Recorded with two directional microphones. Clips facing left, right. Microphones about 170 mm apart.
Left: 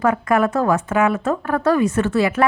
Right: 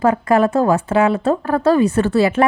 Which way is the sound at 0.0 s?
30° right (ahead or behind).